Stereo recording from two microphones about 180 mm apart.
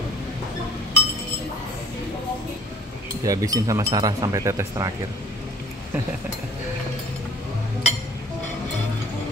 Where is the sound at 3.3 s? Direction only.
20° right (ahead or behind).